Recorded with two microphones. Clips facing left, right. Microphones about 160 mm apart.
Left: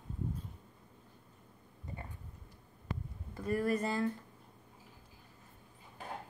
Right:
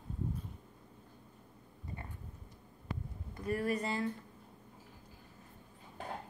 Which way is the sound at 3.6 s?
45° left (ahead or behind).